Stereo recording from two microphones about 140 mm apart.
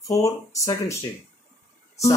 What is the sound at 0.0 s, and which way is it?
Speech, 25° left (ahead or behind).